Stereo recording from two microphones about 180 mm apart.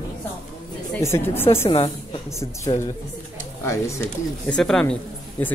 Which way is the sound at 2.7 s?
25° left (ahead or behind).